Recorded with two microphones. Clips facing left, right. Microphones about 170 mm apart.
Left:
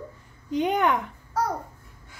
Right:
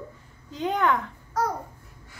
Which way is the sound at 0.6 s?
15° left (ahead or behind).